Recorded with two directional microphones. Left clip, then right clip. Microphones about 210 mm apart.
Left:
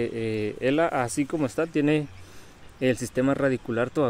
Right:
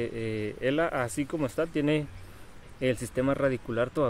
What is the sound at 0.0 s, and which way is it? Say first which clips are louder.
Speech: left 4 dB; 30° left (ahead or behind).